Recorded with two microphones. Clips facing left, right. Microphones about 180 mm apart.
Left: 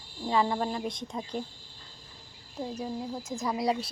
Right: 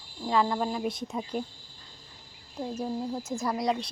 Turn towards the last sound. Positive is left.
turn(degrees=5)  # may be behind; listen again after turning